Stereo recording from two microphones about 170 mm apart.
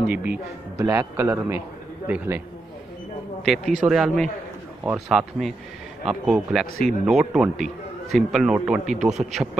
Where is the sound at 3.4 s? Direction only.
Centre (ahead or behind).